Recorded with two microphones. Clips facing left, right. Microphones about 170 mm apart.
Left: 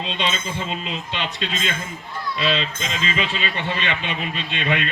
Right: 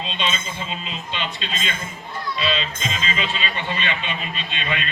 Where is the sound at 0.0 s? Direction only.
65° left (ahead or behind).